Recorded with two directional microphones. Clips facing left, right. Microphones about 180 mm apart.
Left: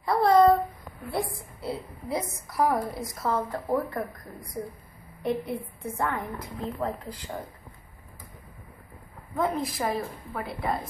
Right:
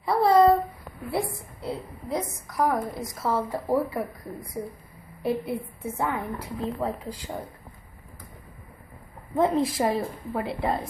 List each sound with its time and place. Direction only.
0.0 s a sound: centre (ahead or behind)
1.1 s a woman's voice: centre (ahead or behind)
5.2 s a woman's voice: 5° right (ahead or behind)
9.3 s a woman's voice: 20° right (ahead or behind)